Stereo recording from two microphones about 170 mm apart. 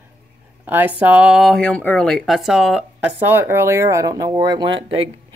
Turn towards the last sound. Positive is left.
turn(degrees=-30)  # may be behind; listen again after turning